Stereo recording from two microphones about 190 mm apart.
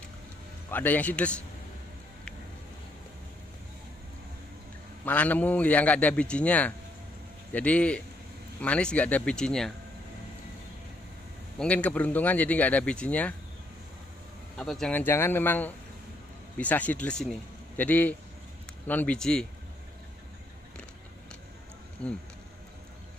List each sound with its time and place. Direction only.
0.7 s speech: 10° left (ahead or behind)
5.0 s speech: 10° left (ahead or behind)
11.5 s speech: 5° left (ahead or behind)
14.6 s a man's voice: 5° left (ahead or behind)